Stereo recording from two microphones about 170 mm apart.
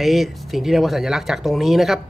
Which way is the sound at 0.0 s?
Centre (ahead or behind).